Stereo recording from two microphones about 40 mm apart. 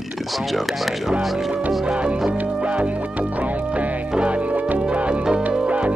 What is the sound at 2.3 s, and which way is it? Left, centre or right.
Music, right.